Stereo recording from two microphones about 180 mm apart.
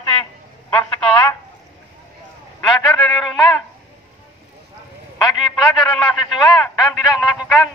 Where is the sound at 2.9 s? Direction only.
5° left (ahead or behind).